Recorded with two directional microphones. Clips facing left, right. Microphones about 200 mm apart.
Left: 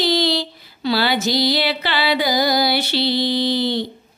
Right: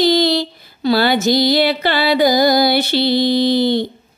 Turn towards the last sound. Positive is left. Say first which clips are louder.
# right 5 dB
turn(degrees=-50)  # may be behind; listen again after turning